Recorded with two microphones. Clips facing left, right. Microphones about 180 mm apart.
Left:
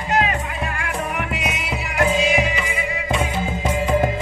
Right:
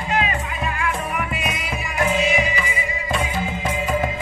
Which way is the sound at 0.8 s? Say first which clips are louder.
Right 2 dB; 70° left (ahead or behind).